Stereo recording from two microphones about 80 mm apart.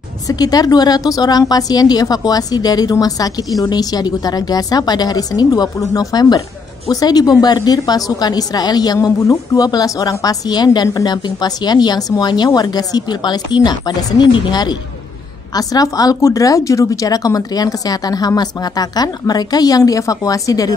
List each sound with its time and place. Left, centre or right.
0.3 s a woman's voice: left
10.9 s a woman's voice: left
11.2 s a woman's voice: left
15.5 s a woman's voice: left